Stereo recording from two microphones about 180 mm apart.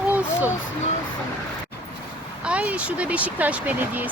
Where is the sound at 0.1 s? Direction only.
10° right (ahead or behind).